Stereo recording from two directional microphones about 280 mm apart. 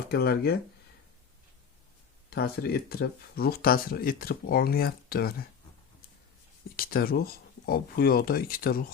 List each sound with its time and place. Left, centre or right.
0.1 s speech: left
2.3 s speech: left
6.7 s speech: left